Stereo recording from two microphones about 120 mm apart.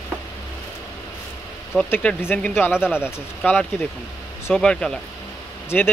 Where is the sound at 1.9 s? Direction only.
15° left (ahead or behind).